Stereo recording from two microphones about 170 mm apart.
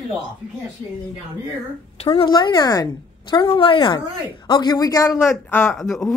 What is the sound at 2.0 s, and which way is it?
A woman's voice, 30° left (ahead or behind).